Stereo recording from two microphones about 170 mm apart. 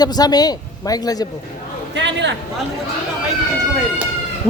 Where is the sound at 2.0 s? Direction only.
90° right.